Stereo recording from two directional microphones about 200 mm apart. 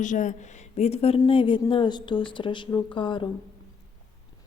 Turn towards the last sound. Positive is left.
turn(degrees=25)  # may be behind; listen again after turning